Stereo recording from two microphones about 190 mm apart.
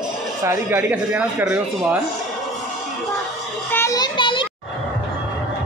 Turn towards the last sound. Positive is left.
turn(degrees=25)  # may be behind; listen again after turning